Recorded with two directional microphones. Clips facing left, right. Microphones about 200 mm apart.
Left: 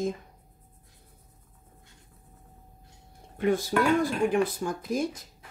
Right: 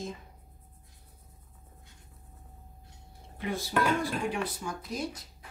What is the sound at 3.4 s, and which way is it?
Speech, 50° left (ahead or behind).